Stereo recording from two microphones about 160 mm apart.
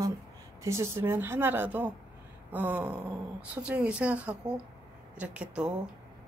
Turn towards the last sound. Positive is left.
turn(degrees=-5)  # may be behind; listen again after turning